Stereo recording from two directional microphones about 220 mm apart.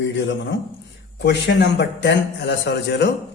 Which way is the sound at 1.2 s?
50° left (ahead or behind).